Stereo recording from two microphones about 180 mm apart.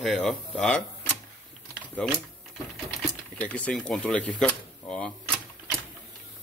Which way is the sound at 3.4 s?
5° left (ahead or behind).